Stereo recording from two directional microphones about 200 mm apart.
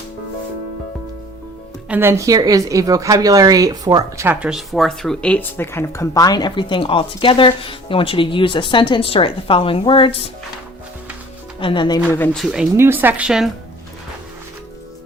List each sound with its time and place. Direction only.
1.9 s a woman's voice: 10° right (ahead or behind); by 10.2 s 25° left (ahead or behind)
11.6 s speech: 25° left (ahead or behind)
12.1 s speech: 5° left (ahead or behind)